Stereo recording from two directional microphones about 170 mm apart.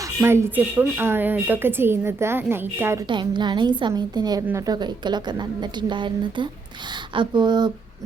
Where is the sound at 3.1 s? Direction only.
25° right (ahead or behind).